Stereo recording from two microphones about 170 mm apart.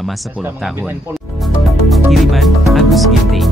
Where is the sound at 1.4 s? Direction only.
Centre (ahead or behind).